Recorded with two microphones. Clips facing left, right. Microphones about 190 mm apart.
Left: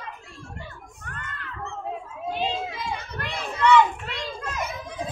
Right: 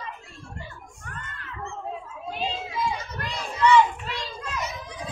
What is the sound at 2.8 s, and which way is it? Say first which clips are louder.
Children playing: right 3 dB; 60° left (ahead or behind).